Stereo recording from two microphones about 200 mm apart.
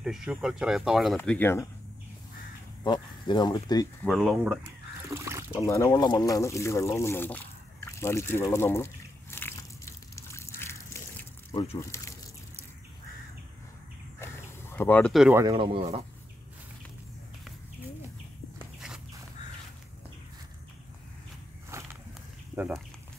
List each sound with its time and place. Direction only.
0.0 s speech: 5° right (ahead or behind)
2.8 s speech: 20° left (ahead or behind)
4.0 s speech: centre (ahead or behind)
5.1 s water: 15° right (ahead or behind)
5.6 s speech: 15° left (ahead or behind)
9.3 s a sound: 10° left (ahead or behind)
14.2 s a sound: 15° left (ahead or behind)
15.4 s speech: 25° right (ahead or behind)
21.7 s walk: 15° right (ahead or behind)